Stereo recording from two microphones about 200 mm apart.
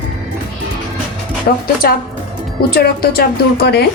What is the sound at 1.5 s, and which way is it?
Speech, 40° left (ahead or behind).